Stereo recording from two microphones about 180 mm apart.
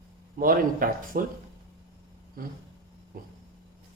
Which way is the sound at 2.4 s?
50° right (ahead or behind).